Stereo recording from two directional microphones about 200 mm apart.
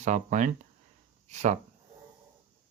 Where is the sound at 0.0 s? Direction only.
35° right (ahead or behind).